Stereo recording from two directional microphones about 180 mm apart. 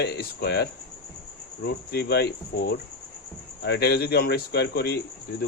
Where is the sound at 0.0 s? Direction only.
60° left (ahead or behind).